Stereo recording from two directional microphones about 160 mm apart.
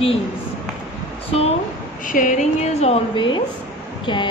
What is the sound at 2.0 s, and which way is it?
A woman's voice, 55° left (ahead or behind).